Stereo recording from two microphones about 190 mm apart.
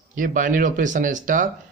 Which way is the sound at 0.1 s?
45° right (ahead or behind).